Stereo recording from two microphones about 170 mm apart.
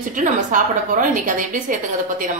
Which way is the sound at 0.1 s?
50° right (ahead or behind).